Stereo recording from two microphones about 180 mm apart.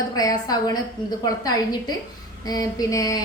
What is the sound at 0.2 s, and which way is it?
Speech, 20° left (ahead or behind).